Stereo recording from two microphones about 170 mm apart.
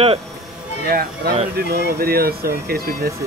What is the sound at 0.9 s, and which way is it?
Speech, 60° right (ahead or behind).